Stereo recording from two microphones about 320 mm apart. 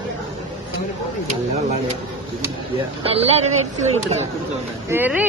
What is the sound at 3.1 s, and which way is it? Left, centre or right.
Speech, centre.